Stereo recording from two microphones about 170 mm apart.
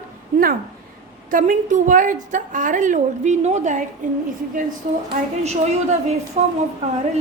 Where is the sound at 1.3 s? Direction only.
50° right (ahead or behind).